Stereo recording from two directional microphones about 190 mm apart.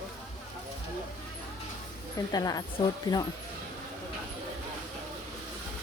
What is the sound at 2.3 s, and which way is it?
Speech, 20° left (ahead or behind).